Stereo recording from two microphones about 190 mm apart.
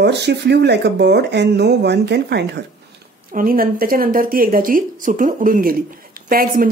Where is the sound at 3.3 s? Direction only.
50° right (ahead or behind).